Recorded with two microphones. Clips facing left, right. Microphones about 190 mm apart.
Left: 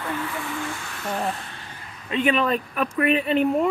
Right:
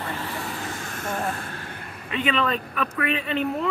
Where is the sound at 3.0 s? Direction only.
55° left (ahead or behind).